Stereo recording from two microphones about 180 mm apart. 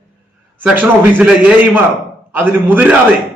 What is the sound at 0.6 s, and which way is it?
Speech, 5° right (ahead or behind).